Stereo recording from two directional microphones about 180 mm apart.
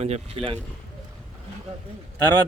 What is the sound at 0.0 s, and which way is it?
Speech, 35° right (ahead or behind).